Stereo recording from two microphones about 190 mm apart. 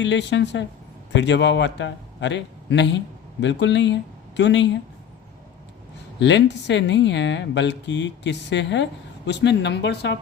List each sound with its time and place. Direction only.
0.0 s a man's voice: 70° left (ahead or behind)
6.1 s speech: 70° left (ahead or behind)